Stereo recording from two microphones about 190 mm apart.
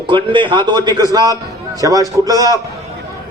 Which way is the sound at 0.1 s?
25° right (ahead or behind).